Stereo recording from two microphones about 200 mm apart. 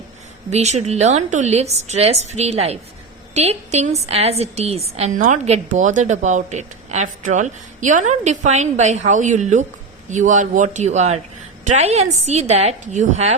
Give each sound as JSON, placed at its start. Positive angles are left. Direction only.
{"t": 0.5, "sound": "a woman's voice", "side_deg": -35}